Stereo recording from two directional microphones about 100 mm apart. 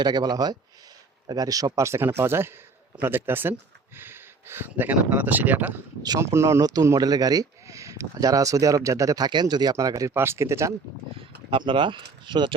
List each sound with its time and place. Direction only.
0.0 s speech: 45° right (ahead or behind); by 5.7 s 15° right (ahead or behind)
6.0 s speech: 35° right (ahead or behind)
11.2 s speech: 60° right (ahead or behind)